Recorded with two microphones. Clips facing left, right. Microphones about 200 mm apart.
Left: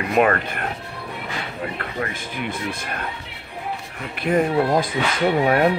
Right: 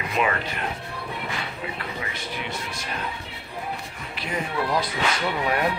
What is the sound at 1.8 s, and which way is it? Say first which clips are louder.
Speech: left 5 dB; 55° left (ahead or behind).